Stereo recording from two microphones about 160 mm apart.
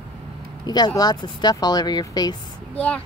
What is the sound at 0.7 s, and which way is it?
Speech, 25° left (ahead or behind).